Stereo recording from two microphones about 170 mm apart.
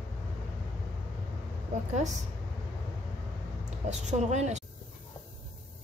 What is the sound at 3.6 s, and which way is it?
A woman's voice, 45° right (ahead or behind).